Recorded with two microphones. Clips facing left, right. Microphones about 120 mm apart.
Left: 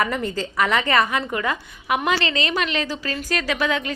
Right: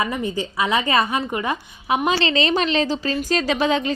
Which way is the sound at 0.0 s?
15° right (ahead or behind).